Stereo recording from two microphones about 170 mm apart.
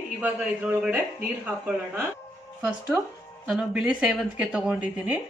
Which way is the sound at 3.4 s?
5° right (ahead or behind).